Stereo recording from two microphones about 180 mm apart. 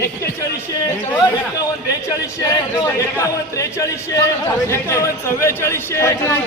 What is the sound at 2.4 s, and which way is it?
Speech, 20° left (ahead or behind).